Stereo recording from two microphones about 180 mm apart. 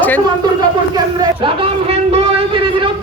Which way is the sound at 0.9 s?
25° right (ahead or behind).